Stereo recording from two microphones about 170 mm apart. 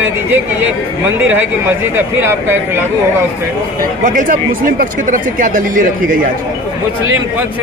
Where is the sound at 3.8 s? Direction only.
50° right (ahead or behind).